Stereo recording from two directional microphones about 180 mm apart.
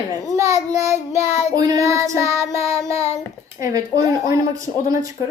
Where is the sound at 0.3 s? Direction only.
15° right (ahead or behind).